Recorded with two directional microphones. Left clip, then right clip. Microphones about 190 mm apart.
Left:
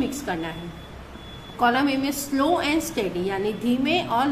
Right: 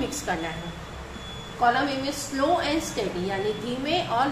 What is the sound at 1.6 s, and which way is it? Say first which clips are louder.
A woman's voice: left 2 dB; 40° left (ahead or behind).